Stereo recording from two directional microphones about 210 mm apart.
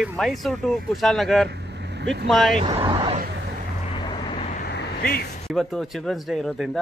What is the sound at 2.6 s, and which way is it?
Speech, 25° right (ahead or behind).